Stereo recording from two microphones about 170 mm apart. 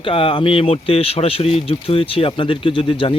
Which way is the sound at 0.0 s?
30° left (ahead or behind).